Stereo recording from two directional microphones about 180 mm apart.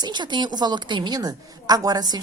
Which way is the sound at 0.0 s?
25° right (ahead or behind).